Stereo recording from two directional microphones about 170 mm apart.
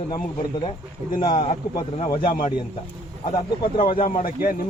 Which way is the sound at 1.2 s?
30° left (ahead or behind).